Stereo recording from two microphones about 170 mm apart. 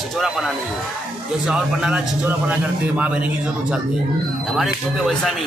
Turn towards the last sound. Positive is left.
turn(degrees=0)  # may be behind; listen again after turning